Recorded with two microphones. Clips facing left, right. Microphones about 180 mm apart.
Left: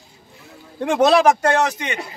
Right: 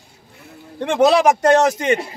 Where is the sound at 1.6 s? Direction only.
45° right (ahead or behind).